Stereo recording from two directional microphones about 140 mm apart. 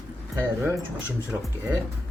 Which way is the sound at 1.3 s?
5° right (ahead or behind).